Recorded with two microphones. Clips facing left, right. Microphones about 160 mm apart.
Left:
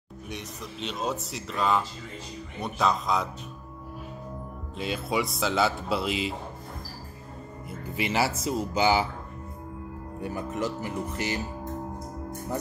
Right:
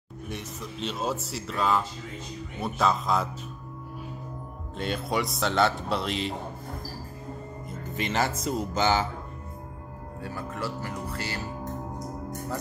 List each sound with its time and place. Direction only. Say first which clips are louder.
0.3 s speech: right 1 dB; centre (ahead or behind)
4.7 s speech: even; centre (ahead or behind)
7.8 s speech: left 1 dB; 10° left (ahead or behind)
10.2 s speech: left 4 dB; 20° left (ahead or behind)